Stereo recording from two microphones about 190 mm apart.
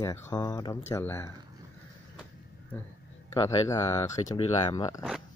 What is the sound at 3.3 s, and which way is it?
Speech, 15° left (ahead or behind).